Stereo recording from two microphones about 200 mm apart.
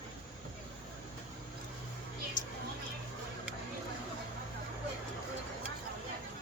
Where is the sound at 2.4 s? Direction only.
40° left (ahead or behind).